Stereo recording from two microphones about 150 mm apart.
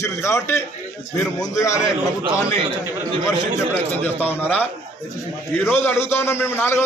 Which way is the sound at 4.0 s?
10° left (ahead or behind).